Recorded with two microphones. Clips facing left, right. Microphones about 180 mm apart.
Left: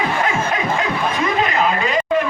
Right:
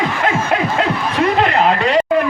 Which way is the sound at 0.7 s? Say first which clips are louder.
Right 3 dB; 65° right (ahead or behind).